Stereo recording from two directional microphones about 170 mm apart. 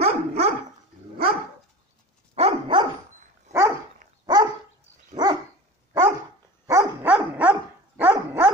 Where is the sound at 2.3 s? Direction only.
35° right (ahead or behind).